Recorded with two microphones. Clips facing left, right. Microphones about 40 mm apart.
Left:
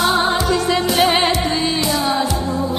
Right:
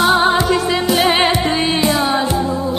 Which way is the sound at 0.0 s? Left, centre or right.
Centre.